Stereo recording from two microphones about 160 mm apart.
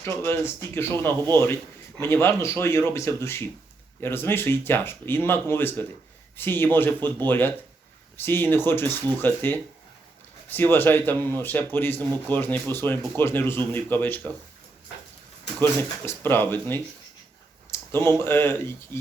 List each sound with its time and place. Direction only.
0.0 s speech: 15° left (ahead or behind)
15.6 s speech: 15° left (ahead or behind)